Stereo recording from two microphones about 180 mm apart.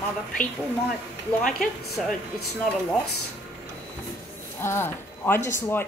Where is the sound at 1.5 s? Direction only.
5° left (ahead or behind).